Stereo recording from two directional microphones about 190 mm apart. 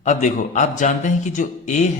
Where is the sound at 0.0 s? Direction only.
40° left (ahead or behind).